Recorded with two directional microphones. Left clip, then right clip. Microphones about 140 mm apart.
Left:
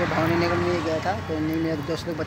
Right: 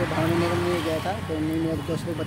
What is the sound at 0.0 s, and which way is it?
Speech, 45° left (ahead or behind).